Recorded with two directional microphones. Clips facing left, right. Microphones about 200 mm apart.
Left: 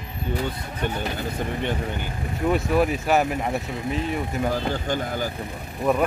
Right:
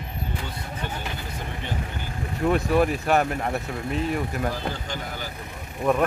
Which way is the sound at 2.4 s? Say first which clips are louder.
Even; centre (ahead or behind).